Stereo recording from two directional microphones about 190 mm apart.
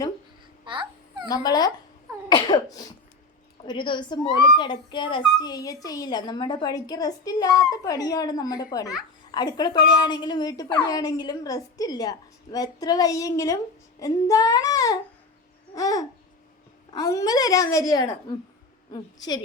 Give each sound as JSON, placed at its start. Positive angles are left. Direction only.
{"t": 0.6, "sound": "babbling", "side_deg": -25}
{"t": 1.3, "sound": "a woman's voice", "side_deg": 20}
{"t": 2.3, "sound": "cough", "side_deg": 20}
{"t": 3.7, "sound": "a woman's voice", "side_deg": 25}